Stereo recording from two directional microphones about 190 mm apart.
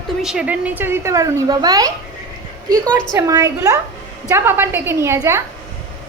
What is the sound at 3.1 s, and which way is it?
A woman's voice, 15° right (ahead or behind).